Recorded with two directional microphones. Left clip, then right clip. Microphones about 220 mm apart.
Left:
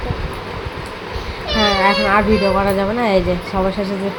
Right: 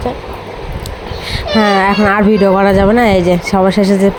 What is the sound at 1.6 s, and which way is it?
Speech, 40° right (ahead or behind).